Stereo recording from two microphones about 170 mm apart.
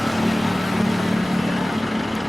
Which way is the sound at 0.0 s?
Centre (ahead or behind).